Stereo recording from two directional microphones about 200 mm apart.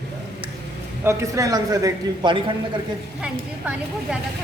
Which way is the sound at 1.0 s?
15° right (ahead or behind).